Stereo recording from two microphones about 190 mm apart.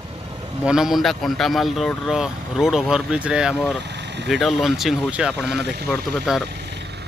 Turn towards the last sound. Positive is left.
turn(degrees=-65)  # may be behind; listen again after turning